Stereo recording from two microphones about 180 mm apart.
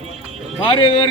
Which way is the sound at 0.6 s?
25° left (ahead or behind).